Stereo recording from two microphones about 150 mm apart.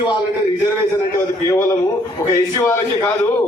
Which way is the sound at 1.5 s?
20° left (ahead or behind).